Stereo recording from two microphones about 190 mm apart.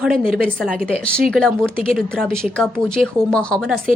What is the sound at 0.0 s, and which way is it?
Speech, centre (ahead or behind).